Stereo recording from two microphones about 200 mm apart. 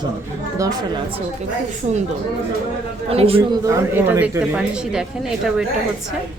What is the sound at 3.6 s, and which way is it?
Speech, 15° right (ahead or behind).